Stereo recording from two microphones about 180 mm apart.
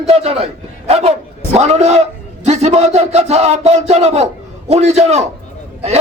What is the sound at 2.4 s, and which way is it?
A man's voice, 35° right (ahead or behind).